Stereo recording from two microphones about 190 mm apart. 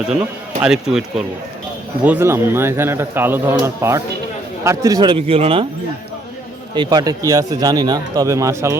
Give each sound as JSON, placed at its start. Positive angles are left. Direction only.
{"t": 0.6, "sound": "speech", "side_deg": -5}
{"t": 2.0, "sound": "speech", "side_deg": -10}
{"t": 6.7, "sound": "speech", "side_deg": -20}